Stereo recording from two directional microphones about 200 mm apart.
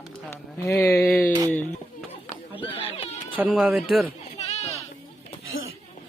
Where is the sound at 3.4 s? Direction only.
5° right (ahead or behind).